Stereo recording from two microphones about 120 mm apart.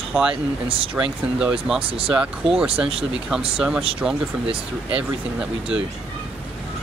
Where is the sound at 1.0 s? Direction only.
5° right (ahead or behind).